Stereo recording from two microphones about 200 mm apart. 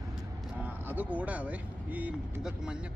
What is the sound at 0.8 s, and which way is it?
Speech, 5° right (ahead or behind).